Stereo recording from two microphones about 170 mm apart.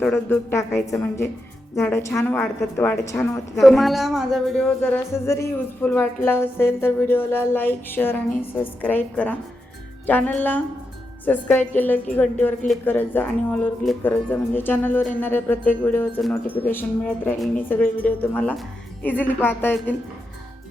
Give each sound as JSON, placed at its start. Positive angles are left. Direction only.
{"t": 0.0, "sound": "a woman's voice", "side_deg": 5}
{"t": 0.5, "sound": "speech", "side_deg": 15}
{"t": 3.6, "sound": "a woman's voice", "side_deg": 0}